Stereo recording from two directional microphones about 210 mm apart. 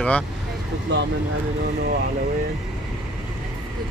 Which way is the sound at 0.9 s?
55° right (ahead or behind).